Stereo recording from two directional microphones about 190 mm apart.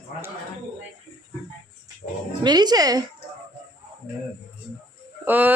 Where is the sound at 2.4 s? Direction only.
20° right (ahead or behind).